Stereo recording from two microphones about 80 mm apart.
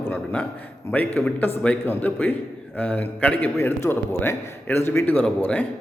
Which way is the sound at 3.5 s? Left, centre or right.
Left.